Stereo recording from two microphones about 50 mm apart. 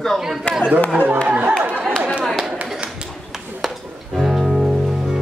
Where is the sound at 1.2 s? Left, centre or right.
Right.